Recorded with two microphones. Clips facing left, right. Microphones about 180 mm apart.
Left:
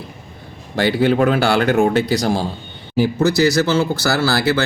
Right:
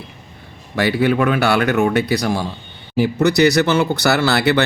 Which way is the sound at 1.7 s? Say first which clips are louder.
Left 1 dB; 65° right (ahead or behind).